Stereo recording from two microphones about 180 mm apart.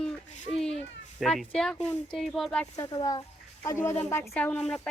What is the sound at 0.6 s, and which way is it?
Speech, 35° left (ahead or behind).